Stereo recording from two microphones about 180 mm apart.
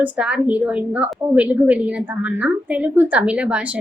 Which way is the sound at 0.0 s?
5° right (ahead or behind).